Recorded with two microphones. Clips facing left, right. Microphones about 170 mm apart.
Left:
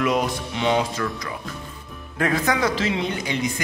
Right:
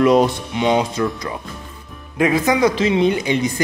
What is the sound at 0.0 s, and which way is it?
Speech, 35° right (ahead or behind).